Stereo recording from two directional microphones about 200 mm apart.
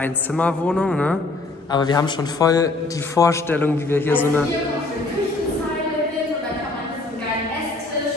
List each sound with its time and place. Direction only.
0.0 s a woman's voice: 5° left (ahead or behind)
1.7 s a man's voice: 20° left (ahead or behind)